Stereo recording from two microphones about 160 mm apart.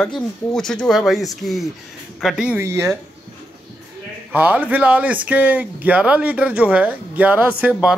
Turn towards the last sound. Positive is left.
turn(degrees=-10)  # may be behind; listen again after turning